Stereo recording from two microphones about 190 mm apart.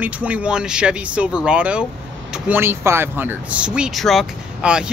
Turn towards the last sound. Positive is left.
turn(degrees=-5)  # may be behind; listen again after turning